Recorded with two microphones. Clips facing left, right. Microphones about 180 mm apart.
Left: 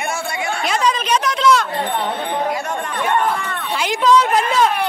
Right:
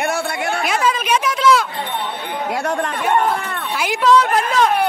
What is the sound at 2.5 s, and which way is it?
Speech, 65° right (ahead or behind).